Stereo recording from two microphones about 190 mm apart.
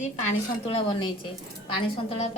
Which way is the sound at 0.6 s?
30° left (ahead or behind).